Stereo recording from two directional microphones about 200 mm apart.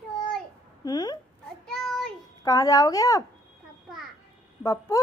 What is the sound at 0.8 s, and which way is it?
Speech, 20° left (ahead or behind).